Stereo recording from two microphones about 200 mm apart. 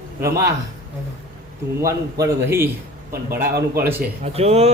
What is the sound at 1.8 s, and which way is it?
Speech, 15° right (ahead or behind).